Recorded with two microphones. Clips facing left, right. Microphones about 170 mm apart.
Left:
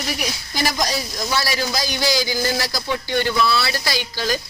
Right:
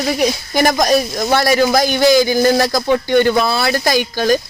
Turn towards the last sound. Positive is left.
turn(degrees=-50)  # may be behind; listen again after turning